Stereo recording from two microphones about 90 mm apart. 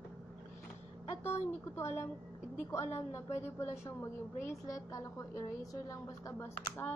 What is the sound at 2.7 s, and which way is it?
A woman's voice, 30° left (ahead or behind).